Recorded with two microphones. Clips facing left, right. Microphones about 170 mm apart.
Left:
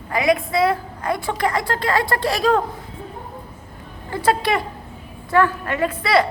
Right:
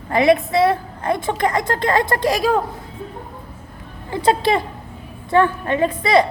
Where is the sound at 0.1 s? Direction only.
30° right (ahead or behind); by 2.6 s 15° right (ahead or behind).